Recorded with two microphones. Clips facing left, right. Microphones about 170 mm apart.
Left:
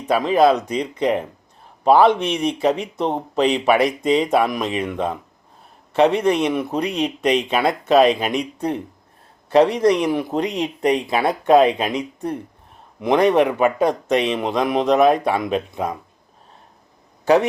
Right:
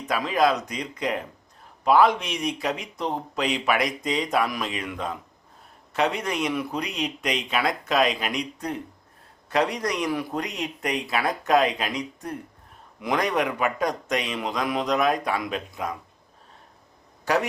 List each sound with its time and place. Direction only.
0.1 s speech: 30° left (ahead or behind)
9.5 s speech: 30° left (ahead or behind)
17.3 s speech: 30° left (ahead or behind)